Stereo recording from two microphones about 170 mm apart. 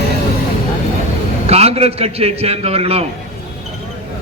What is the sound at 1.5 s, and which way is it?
A man's voice, 40° right (ahead or behind).